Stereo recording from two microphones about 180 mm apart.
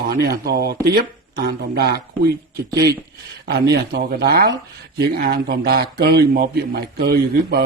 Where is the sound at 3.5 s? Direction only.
65° right (ahead or behind).